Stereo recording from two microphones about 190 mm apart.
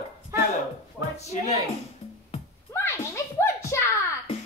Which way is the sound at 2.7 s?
10° left (ahead or behind).